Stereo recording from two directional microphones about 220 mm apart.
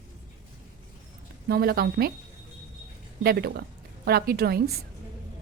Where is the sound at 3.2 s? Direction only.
45° right (ahead or behind).